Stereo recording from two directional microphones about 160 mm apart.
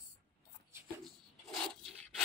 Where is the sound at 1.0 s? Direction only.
Centre (ahead or behind).